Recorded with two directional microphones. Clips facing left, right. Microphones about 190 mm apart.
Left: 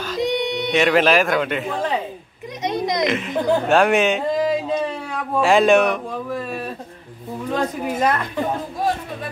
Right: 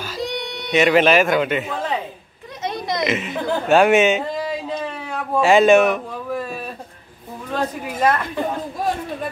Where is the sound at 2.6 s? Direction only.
15° left (ahead or behind).